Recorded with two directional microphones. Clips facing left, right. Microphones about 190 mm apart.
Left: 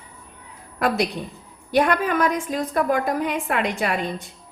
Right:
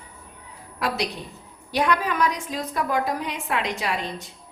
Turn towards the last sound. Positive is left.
turn(degrees=55)  # may be behind; listen again after turning